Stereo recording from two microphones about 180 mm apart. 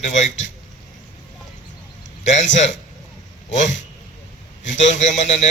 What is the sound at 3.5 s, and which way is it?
Speech, 40° left (ahead or behind).